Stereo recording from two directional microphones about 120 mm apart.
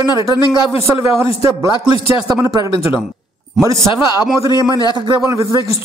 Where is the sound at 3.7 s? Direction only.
35° left (ahead or behind).